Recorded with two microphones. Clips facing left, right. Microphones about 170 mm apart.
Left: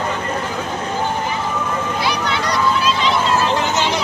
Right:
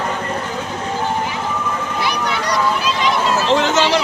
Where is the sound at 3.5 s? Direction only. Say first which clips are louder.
Right 4 dB; 90° right.